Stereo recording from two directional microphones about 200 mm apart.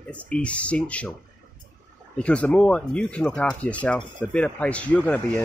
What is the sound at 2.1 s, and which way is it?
Speech, 5° left (ahead or behind).